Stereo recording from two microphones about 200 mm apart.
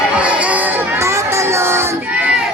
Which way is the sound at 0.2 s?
5° right (ahead or behind).